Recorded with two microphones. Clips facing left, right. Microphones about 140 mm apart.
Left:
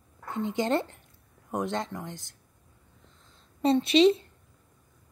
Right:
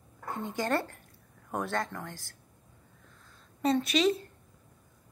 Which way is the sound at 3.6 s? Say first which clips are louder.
Left 6 dB; 25° left (ahead or behind).